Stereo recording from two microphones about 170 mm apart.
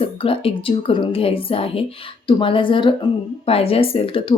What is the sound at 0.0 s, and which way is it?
Speech, 35° left (ahead or behind).